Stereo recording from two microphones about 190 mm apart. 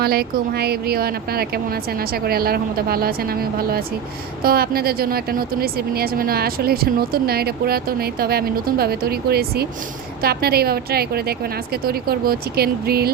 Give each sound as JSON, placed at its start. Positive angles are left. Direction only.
{"t": 0.0, "sound": "a woman's voice", "side_deg": -55}